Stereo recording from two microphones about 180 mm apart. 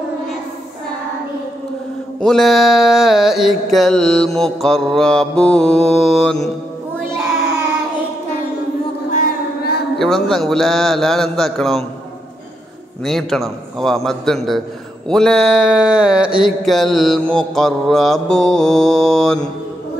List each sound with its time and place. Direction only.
2.1 s mantra: centre (ahead or behind)
9.1 s a sound: 55° left (ahead or behind)
9.9 s mantra: centre (ahead or behind)
13.0 s mantra: centre (ahead or behind)